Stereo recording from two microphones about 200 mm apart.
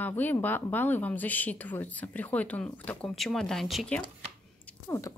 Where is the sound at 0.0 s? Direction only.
10° left (ahead or behind).